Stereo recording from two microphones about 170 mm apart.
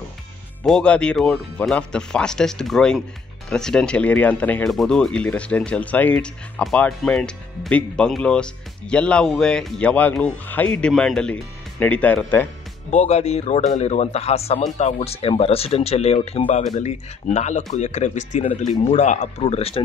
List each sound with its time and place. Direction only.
0.7 s speech: 5° left (ahead or behind)
13.0 s speech: 40° left (ahead or behind)